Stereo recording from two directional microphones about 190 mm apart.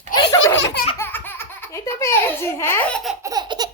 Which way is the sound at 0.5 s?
70° left (ahead or behind).